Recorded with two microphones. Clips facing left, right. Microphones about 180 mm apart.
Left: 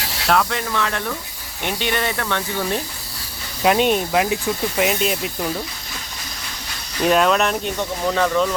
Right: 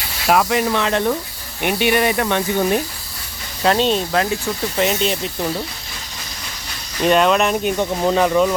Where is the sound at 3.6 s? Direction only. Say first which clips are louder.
Even; 10° left (ahead or behind).